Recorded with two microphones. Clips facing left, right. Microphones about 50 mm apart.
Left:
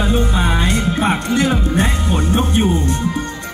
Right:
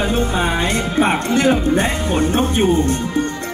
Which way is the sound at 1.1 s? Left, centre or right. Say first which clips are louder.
Right 2 dB; right.